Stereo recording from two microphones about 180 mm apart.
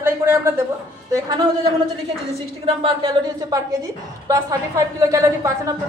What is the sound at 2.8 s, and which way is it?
Speech, 25° right (ahead or behind).